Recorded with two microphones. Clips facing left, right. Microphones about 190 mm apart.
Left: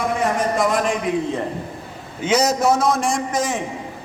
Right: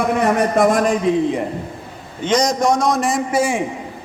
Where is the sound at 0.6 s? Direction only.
50° right (ahead or behind).